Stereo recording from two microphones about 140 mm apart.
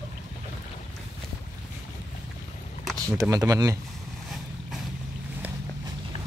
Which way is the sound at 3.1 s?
25° right (ahead or behind).